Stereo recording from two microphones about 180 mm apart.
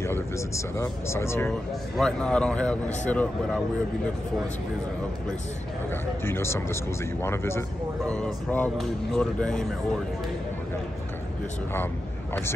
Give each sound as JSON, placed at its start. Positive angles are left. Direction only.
{"t": 0.0, "sound": "speech", "side_deg": 15}
{"t": 1.5, "sound": "speech", "side_deg": 5}
{"t": 6.2, "sound": "speech", "side_deg": 15}